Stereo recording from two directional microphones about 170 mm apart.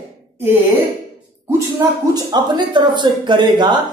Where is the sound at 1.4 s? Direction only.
15° right (ahead or behind).